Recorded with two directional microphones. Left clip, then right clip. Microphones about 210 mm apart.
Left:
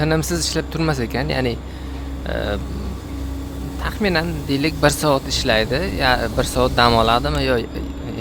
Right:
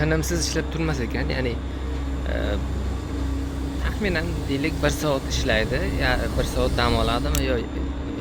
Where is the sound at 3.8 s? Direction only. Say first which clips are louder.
Left 7 dB; 35° left (ahead or behind).